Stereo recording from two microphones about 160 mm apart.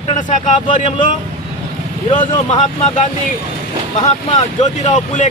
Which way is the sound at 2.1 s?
50° left (ahead or behind).